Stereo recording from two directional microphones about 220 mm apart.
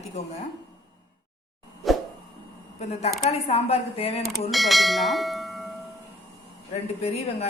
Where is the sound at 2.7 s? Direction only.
30° left (ahead or behind).